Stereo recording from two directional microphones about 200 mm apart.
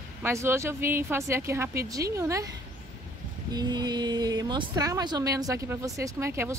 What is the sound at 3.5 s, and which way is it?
A woman's voice, 20° right (ahead or behind).